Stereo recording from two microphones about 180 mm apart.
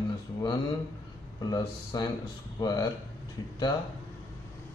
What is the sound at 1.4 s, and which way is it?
A man's voice, 20° left (ahead or behind).